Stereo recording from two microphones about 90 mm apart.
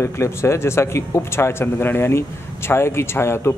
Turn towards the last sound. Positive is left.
turn(degrees=30)  # may be behind; listen again after turning